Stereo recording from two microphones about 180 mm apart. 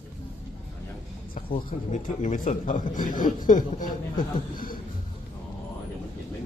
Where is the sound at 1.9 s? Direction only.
45° left (ahead or behind).